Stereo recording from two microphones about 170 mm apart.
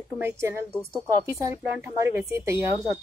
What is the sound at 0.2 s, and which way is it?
Speech, 15° right (ahead or behind).